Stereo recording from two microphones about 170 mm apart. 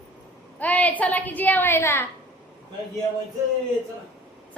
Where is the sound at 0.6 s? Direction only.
10° left (ahead or behind).